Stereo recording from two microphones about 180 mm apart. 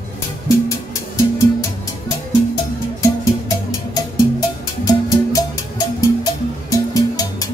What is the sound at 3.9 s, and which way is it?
Music, 20° left (ahead or behind).